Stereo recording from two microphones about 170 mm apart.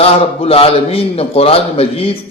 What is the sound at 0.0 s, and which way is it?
A man's voice, 35° left (ahead or behind).